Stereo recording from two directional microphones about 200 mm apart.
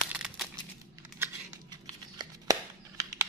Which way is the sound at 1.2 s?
20° right (ahead or behind).